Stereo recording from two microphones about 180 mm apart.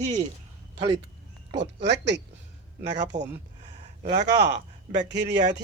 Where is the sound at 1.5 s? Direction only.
75° right (ahead or behind).